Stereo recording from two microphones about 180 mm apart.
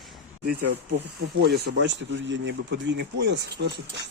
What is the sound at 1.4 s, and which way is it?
Speech, 65° right (ahead or behind).